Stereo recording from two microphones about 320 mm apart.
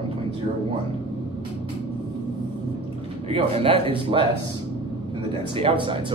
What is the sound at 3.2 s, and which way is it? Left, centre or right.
Speech, centre.